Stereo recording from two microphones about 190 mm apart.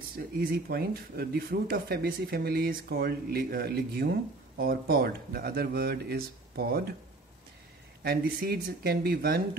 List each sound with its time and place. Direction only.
0.4 s speech: 50° right (ahead or behind)
8.0 s speech: 50° right (ahead or behind)